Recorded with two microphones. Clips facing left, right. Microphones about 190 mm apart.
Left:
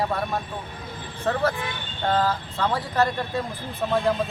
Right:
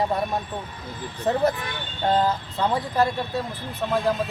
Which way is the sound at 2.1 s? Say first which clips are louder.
Right 1 dB; 15° right (ahead or behind).